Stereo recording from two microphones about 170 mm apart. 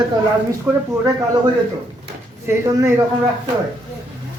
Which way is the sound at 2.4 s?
15° right (ahead or behind).